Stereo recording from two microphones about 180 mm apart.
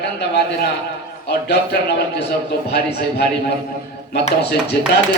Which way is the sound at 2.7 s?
65° left (ahead or behind).